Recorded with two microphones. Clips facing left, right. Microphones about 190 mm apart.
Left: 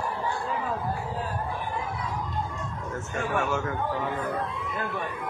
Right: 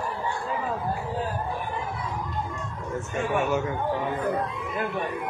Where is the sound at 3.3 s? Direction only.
20° right (ahead or behind).